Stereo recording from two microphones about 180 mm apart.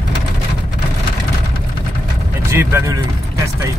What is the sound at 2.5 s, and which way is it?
Speech, 15° right (ahead or behind).